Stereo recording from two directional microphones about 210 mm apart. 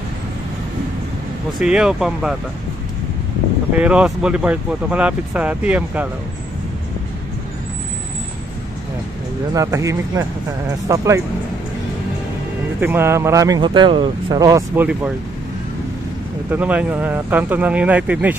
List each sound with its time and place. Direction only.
1.6 s speech: 5° right (ahead or behind)
3.7 s speech: 5° right (ahead or behind)
9.5 s speech: 15° right (ahead or behind)
12.8 s speech: 10° right (ahead or behind)
16.4 s speech: 10° right (ahead or behind)